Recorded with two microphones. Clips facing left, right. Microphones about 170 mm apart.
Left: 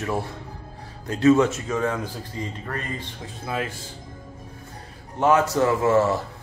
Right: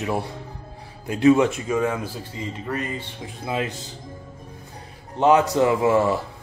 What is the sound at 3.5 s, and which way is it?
Speech, 20° right (ahead or behind).